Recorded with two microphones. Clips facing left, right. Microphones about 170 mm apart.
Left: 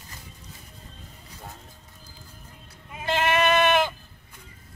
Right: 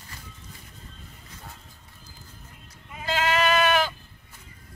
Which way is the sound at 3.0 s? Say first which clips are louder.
Left 1 dB; 25° left (ahead or behind).